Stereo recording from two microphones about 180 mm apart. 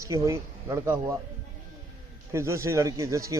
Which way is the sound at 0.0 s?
15° right (ahead or behind).